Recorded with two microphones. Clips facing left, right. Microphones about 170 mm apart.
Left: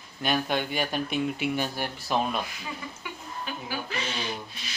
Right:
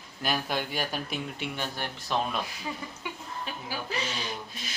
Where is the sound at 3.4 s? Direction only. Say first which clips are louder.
Left 2 dB; 35° right (ahead or behind).